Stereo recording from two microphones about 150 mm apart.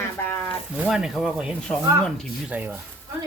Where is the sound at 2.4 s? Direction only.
10° right (ahead or behind).